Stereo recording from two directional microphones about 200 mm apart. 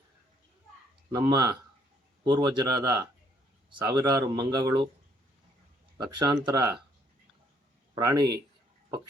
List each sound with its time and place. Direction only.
1.1 s speech: 20° right (ahead or behind)
6.0 s speech: 20° right (ahead or behind)
7.9 s speech: 20° right (ahead or behind)